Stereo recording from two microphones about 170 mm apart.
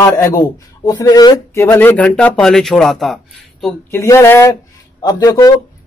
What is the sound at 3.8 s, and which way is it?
Speech, 15° left (ahead or behind).